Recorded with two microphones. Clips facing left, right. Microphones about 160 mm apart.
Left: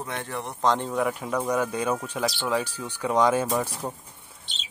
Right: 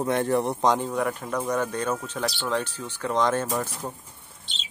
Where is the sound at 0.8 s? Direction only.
Centre (ahead or behind).